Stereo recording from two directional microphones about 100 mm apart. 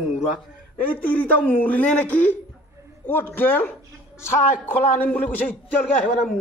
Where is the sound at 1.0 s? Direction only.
15° left (ahead or behind).